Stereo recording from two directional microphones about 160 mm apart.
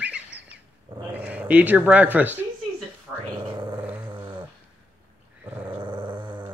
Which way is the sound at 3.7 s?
10° right (ahead or behind).